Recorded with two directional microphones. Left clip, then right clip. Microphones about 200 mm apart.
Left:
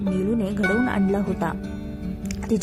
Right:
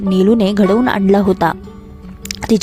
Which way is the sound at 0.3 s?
45° right (ahead or behind).